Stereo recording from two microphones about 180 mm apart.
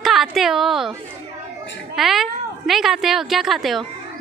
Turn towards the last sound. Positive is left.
turn(degrees=0)  # may be behind; listen again after turning